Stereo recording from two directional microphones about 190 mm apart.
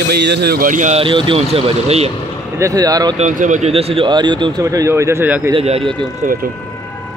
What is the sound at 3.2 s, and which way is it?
Speech, 40° right (ahead or behind).